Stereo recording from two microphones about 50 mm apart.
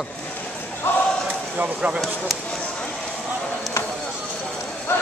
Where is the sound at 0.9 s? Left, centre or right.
Left.